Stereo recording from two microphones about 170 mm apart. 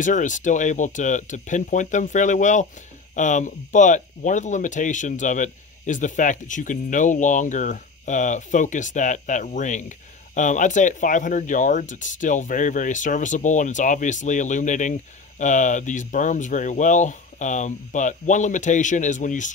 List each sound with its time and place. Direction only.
0.0 s speech: 45° left (ahead or behind)